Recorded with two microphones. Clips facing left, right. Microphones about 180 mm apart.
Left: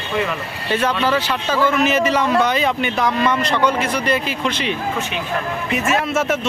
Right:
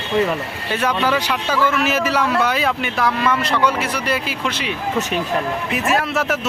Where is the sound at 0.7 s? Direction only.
10° right (ahead or behind).